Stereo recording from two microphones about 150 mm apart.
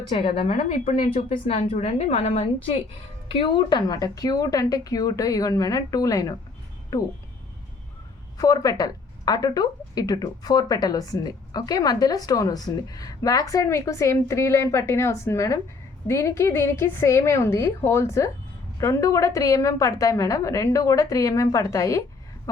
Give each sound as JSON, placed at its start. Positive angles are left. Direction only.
{"t": 0.1, "sound": "a woman's voice", "side_deg": 35}
{"t": 8.4, "sound": "a woman's voice", "side_deg": 25}